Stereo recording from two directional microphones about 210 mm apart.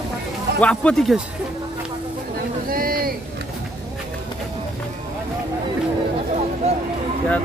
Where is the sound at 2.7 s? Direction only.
45° right (ahead or behind).